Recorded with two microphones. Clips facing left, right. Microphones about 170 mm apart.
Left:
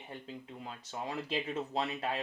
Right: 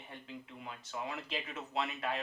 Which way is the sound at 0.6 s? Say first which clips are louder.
Even; 30° left (ahead or behind).